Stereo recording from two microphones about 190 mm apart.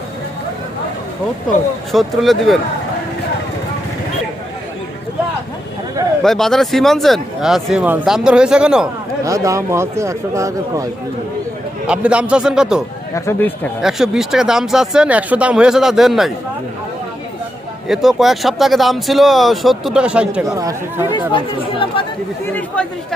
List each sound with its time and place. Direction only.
1.9 s speech: centre (ahead or behind)
6.2 s speech: centre (ahead or behind)
9.2 s speech: 15° right (ahead or behind)
11.9 s speech: 5° right (ahead or behind)
13.1 s speech: 10° left (ahead or behind)
13.8 s speech: 5° right (ahead or behind)
17.8 s speech: centre (ahead or behind)
20.4 s speech: 20° right (ahead or behind)
21.1 s speech: 25° left (ahead or behind)
22.5 s speech: 5° left (ahead or behind)